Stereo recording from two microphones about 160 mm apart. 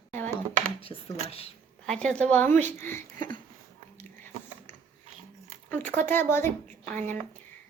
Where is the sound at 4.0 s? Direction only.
15° left (ahead or behind).